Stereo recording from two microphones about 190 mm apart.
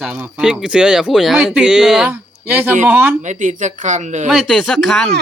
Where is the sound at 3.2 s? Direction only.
40° right (ahead or behind).